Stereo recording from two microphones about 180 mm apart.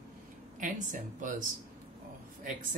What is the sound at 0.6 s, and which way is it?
Speech, 45° right (ahead or behind).